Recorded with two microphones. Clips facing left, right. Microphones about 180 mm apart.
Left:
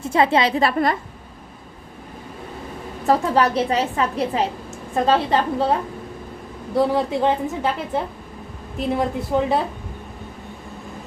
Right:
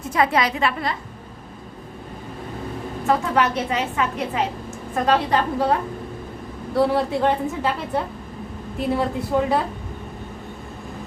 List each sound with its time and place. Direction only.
0.0 s a woman's voice: 30° left (ahead or behind); by 0.9 s 45° left (ahead or behind)
3.1 s a woman's voice: 35° left (ahead or behind)
6.7 s a woman's voice: 20° left (ahead or behind)
9.0 s a woman's voice: 20° left (ahead or behind)